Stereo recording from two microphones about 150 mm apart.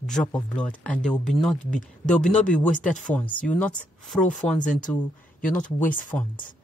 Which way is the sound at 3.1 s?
10° left (ahead or behind).